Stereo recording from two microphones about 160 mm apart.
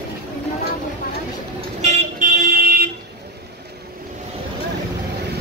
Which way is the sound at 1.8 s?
45° right (ahead or behind).